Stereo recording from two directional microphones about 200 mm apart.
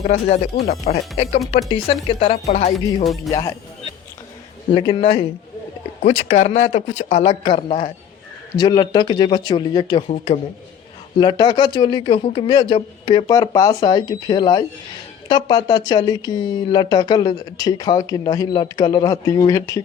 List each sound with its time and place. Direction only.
0.9 s speech: 35° left (ahead or behind)
2.7 s music: centre (ahead or behind)
4.7 s speech: 25° left (ahead or behind)